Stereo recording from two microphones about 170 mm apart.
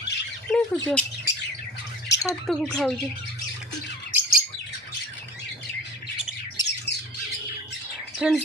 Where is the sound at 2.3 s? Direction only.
5° left (ahead or behind).